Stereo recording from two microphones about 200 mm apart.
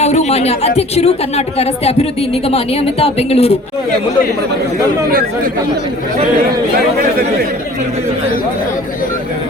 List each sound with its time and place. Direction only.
0.0 s speech: 35° left (ahead or behind)